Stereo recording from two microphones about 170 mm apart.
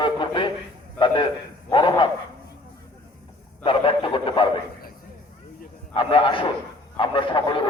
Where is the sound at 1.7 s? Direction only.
30° left (ahead or behind).